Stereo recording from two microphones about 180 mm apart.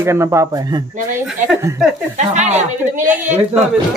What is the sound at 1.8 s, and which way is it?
Speech, centre (ahead or behind).